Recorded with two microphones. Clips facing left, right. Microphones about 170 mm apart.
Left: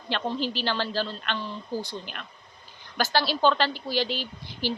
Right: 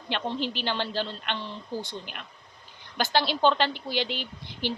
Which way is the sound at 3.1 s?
20° right (ahead or behind).